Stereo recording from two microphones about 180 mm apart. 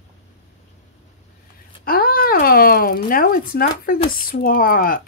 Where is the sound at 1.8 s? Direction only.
55° left (ahead or behind).